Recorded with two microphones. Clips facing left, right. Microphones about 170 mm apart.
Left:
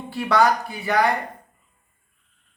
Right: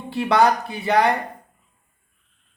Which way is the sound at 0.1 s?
20° right (ahead or behind).